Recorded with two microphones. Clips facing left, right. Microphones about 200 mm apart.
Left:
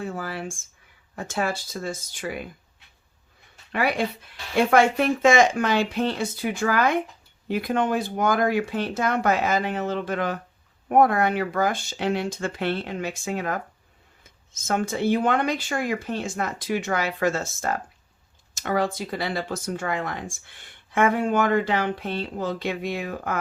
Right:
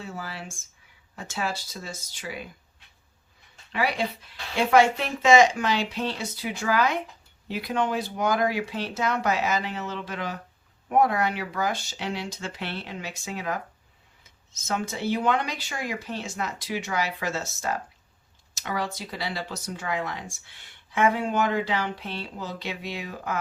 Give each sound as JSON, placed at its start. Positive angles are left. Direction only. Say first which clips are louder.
{"t": 0.0, "sound": "speech", "louder": "left 6 dB", "side_deg": 50}
{"t": 3.7, "sound": "speech", "louder": "left 3 dB", "side_deg": 55}